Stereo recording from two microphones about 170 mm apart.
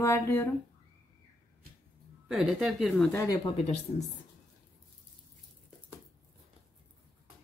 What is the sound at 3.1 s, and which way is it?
Speech, 20° left (ahead or behind).